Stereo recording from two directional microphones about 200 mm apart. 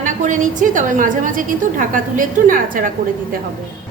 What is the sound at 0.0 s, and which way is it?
A woman's voice, 40° right (ahead or behind).